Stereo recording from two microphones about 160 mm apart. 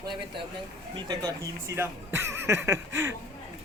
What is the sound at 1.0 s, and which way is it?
A man's voice, 20° right (ahead or behind).